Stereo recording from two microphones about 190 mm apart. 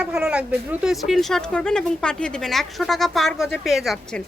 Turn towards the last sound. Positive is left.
turn(degrees=0)  # may be behind; listen again after turning